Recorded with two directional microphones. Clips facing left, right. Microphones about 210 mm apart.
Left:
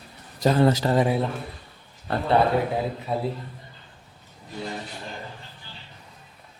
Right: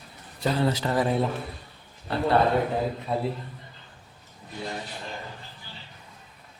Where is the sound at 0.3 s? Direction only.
45° left (ahead or behind).